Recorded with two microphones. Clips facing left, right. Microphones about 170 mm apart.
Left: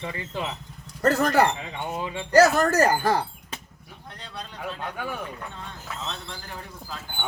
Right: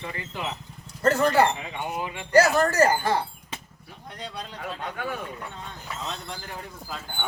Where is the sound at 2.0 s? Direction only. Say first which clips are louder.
Left 2 dB; 35° left (ahead or behind).